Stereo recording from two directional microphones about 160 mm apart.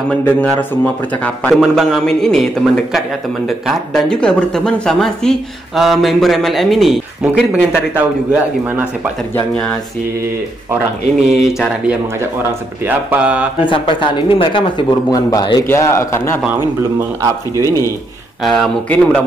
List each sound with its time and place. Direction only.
0.1 s a man's voice: 10° left (ahead or behind)
7.2 s a man's voice: 10° right (ahead or behind)
9.3 s a man's voice: 5° left (ahead or behind)
11.3 s a man's voice: centre (ahead or behind)
13.7 s a man's voice: 35° left (ahead or behind); by 16.3 s 15° left (ahead or behind)
17.6 s speech: 20° left (ahead or behind)
18.4 s speech: centre (ahead or behind)